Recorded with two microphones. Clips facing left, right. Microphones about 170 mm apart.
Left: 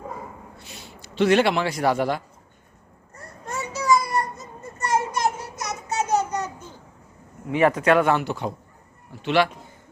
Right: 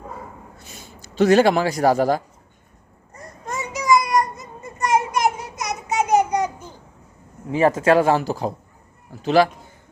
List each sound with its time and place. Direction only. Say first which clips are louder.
0.6 s a man's voice: even; 45° right (ahead or behind)
3.2 s a sound: right 2 dB; 15° right (ahead or behind)
7.8 s speech: right 3 dB; 30° right (ahead or behind)